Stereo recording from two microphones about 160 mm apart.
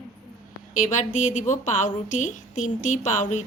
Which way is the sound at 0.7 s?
50° left (ahead or behind).